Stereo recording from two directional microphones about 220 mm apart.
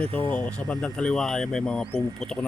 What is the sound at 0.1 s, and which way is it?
Speech, 25° right (ahead or behind).